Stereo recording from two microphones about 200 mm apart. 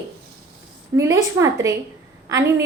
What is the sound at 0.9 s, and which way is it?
A woman's voice, 15° right (ahead or behind).